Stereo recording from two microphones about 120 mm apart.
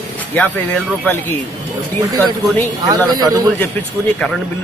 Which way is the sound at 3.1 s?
30° right (ahead or behind).